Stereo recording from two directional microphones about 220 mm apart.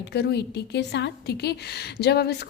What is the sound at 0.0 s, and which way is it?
A woman's voice, 50° left (ahead or behind).